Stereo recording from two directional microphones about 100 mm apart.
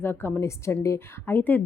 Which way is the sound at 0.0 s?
20° left (ahead or behind).